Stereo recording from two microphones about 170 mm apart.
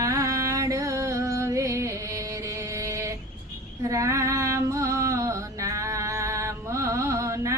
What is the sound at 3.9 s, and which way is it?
Music, 20° right (ahead or behind).